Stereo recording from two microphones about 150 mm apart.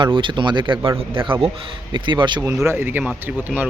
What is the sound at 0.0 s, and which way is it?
Speech, 35° right (ahead or behind).